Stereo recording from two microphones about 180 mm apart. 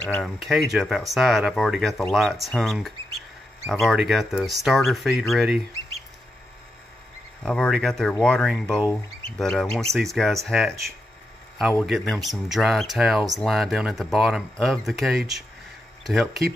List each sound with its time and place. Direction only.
0.1 s speech: centre (ahead or behind)
7.4 s speech: 5° left (ahead or behind)
11.8 s speech: centre (ahead or behind)